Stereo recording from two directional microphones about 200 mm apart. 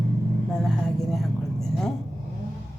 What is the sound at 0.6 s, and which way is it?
Speech, centre (ahead or behind).